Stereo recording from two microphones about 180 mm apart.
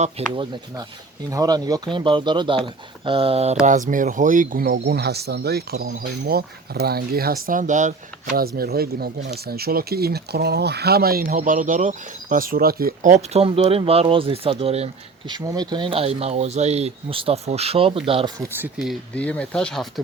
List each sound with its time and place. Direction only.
0.3 s speech: 25° right (ahead or behind)
15.3 s speech: 20° right (ahead or behind)
18.3 s speech: 10° right (ahead or behind)
19.1 s speech: 5° left (ahead or behind)